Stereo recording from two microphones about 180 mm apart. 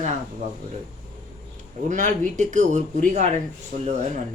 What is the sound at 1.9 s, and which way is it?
Speech, 45° right (ahead or behind).